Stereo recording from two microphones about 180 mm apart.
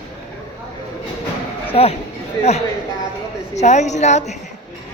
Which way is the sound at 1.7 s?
35° left (ahead or behind).